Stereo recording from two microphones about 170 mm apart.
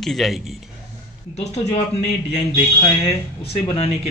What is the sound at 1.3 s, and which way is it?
Speech, 40° left (ahead or behind).